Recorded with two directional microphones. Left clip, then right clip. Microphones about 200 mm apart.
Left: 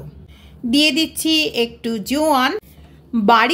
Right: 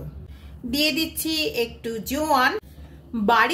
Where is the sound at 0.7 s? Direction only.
40° left (ahead or behind).